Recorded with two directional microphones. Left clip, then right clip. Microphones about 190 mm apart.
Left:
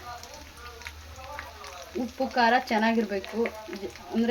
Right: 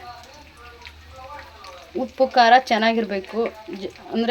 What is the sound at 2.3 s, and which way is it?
Speech, 40° right (ahead or behind).